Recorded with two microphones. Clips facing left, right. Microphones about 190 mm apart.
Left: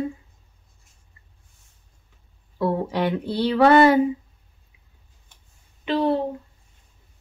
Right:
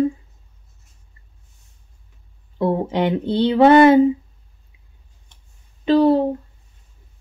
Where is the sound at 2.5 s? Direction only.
20° right (ahead or behind).